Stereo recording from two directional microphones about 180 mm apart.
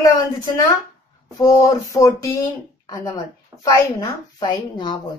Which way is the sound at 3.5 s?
15° right (ahead or behind).